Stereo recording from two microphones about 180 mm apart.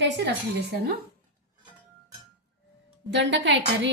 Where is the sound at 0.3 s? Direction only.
65° right (ahead or behind).